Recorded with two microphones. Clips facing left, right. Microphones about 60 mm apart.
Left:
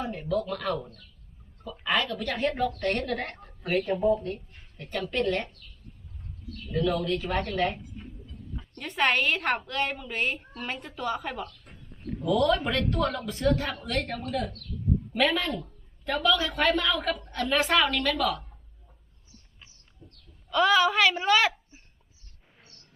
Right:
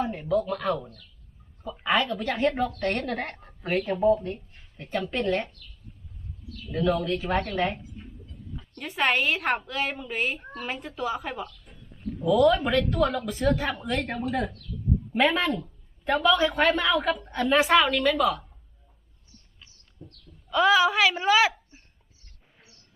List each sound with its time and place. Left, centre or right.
0.0 s a woman's voice: centre
2.0 s a woman's voice: centre
3.0 s a woman's voice: centre
3.9 s a woman's voice: centre
6.7 s a woman's voice: centre
11.7 s a sound: centre
12.2 s a woman's voice: centre; by 15.4 s right
15.4 s a woman's voice: centre
16.0 s a woman's voice: centre
20.5 s speech: centre
22.6 s music: left